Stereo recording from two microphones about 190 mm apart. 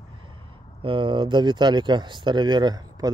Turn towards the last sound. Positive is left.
turn(degrees=-20)  # may be behind; listen again after turning